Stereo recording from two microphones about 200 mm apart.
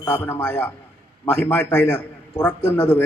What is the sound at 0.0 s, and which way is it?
A man's voice, 10° left (ahead or behind).